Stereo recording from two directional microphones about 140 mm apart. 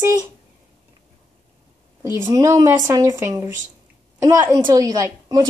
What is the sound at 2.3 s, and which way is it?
A woman's voice, 25° right (ahead or behind).